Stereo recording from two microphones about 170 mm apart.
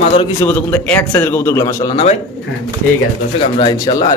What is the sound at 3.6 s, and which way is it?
Speech, 25° left (ahead or behind).